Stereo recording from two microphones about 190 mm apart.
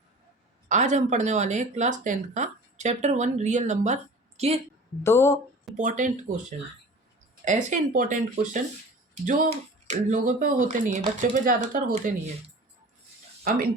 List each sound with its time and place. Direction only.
0.7 s a woman's voice: 40° right (ahead or behind)
5.0 s speech: 15° left (ahead or behind)
5.7 s speech: 40° right (ahead or behind)
7.4 s speech: 40° right (ahead or behind)
9.2 s speech: 40° right (ahead or behind)
13.4 s speech: 50° right (ahead or behind)